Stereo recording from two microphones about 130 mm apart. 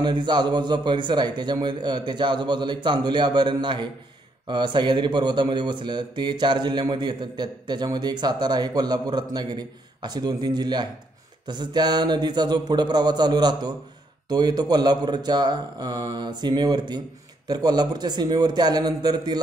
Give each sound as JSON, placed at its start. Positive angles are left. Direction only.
{"t": 0.0, "sound": "a man's voice", "side_deg": -35}